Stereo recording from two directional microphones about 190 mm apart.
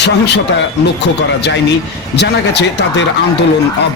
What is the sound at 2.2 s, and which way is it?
Speech, 65° left (ahead or behind).